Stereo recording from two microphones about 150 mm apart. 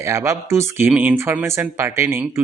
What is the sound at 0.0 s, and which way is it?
Speech, 20° right (ahead or behind).